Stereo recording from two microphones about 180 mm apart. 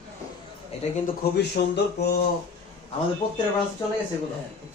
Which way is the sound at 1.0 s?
65° left (ahead or behind).